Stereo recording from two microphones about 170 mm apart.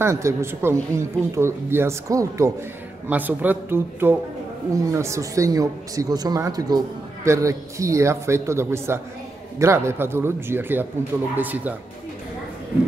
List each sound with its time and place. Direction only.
0.0 s speech: 15° right (ahead or behind)